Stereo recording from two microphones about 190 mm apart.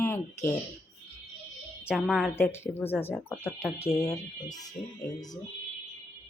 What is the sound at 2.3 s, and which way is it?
Speech, 15° left (ahead or behind).